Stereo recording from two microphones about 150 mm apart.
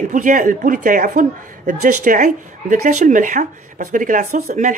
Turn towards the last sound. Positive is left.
turn(degrees=-55)  # may be behind; listen again after turning